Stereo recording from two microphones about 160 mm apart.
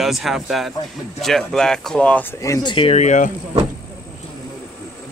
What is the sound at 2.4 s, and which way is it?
Speech, 25° left (ahead or behind).